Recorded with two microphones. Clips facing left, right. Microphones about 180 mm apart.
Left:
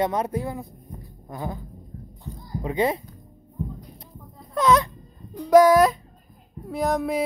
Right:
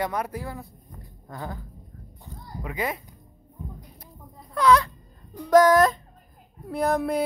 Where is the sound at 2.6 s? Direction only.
25° left (ahead or behind).